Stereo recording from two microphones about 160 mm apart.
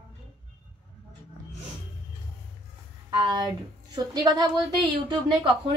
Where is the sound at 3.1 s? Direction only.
30° right (ahead or behind).